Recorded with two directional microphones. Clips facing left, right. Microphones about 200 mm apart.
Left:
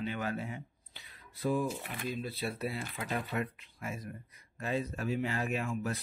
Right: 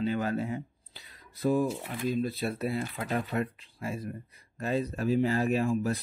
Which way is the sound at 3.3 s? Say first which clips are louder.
Right 4 dB; 30° right (ahead or behind).